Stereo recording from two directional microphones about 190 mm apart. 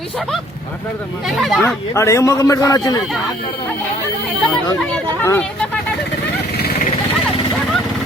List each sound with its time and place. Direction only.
1.3 s speech: centre (ahead or behind)
1.6 s a man's voice: 15° left (ahead or behind)
5.2 s a man's voice: 10° left (ahead or behind)